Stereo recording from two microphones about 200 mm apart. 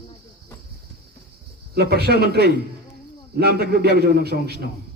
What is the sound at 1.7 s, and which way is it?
A man's voice, 55° right (ahead or behind).